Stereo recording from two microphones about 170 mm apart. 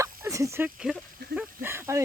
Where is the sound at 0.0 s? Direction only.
20° right (ahead or behind).